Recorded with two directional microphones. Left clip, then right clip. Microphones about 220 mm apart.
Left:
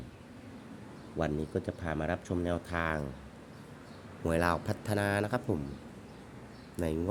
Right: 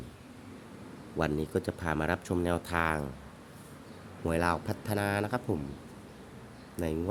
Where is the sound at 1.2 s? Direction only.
10° right (ahead or behind).